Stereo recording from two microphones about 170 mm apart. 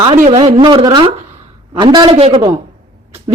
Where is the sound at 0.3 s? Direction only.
35° right (ahead or behind).